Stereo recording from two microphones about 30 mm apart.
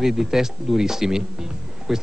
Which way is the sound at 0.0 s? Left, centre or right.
Centre.